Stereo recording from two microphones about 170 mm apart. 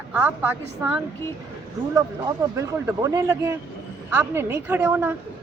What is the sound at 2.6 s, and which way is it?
A woman's voice, 15° right (ahead or behind).